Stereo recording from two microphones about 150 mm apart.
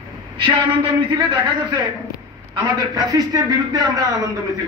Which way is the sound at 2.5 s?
25° right (ahead or behind).